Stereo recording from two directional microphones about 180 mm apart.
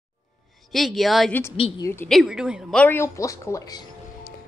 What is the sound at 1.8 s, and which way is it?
Speech, 15° left (ahead or behind).